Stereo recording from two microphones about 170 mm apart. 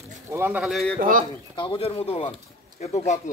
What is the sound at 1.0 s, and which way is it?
Speech, 55° right (ahead or behind).